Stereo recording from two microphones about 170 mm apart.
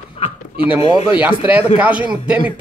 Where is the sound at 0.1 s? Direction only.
30° left (ahead or behind).